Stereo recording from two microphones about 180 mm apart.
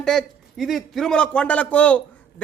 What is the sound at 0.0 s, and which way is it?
A man's voice, centre (ahead or behind).